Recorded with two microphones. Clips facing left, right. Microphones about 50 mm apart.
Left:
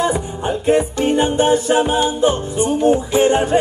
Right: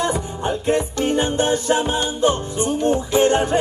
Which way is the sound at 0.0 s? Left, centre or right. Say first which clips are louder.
Left 3 dB; centre.